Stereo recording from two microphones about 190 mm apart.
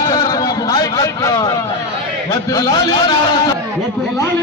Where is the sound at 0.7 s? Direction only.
20° left (ahead or behind).